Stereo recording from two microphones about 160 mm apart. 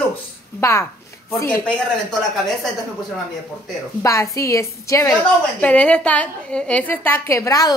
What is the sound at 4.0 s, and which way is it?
A woman's voice, 20° left (ahead or behind).